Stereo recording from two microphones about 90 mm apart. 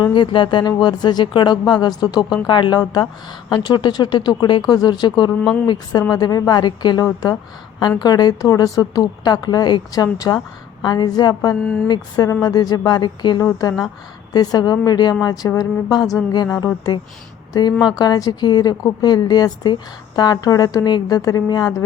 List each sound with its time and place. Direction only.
0.0 s a woman's voice: 65° left (ahead or behind)
7.0 s a woman's voice: 40° left (ahead or behind)
11.6 s speech: 15° left (ahead or behind)
11.9 s a woman's voice: 45° left (ahead or behind)
13.4 s a woman's voice: 40° left (ahead or behind)